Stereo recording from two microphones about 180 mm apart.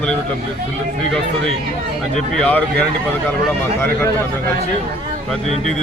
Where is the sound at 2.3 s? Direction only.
5° left (ahead or behind).